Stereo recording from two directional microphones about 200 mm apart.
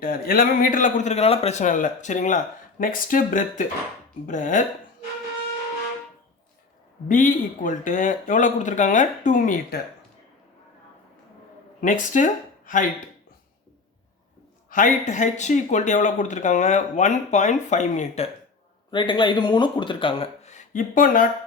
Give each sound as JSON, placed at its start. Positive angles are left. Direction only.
{"t": 0.0, "sound": "a man's voice", "side_deg": 50}
{"t": 7.1, "sound": "a man's voice", "side_deg": 40}
{"t": 11.8, "sound": "speech", "side_deg": 40}
{"t": 14.7, "sound": "a man's voice", "side_deg": 40}
{"t": 18.9, "sound": "speech", "side_deg": 25}